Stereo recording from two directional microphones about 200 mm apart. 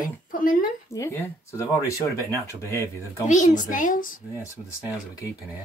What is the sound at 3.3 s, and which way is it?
Speech, 40° left (ahead or behind).